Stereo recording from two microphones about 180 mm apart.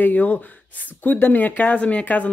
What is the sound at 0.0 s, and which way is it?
Speech, 10° left (ahead or behind).